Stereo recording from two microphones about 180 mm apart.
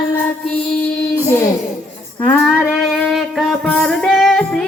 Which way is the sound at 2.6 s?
Centre (ahead or behind).